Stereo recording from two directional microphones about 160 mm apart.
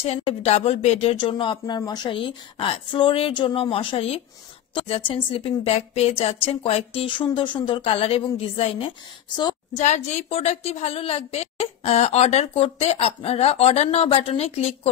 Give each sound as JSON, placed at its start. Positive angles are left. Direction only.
{"t": 0.0, "sound": "a woman's voice", "side_deg": 40}
{"t": 9.8, "sound": "a woman's voice", "side_deg": 45}